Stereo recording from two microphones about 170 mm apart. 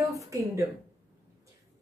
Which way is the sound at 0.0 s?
20° right (ahead or behind).